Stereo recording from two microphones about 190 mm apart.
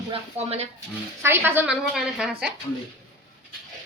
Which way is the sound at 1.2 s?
10° right (ahead or behind).